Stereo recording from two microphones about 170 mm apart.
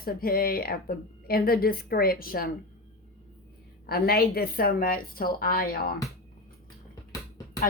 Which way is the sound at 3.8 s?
65° left (ahead or behind).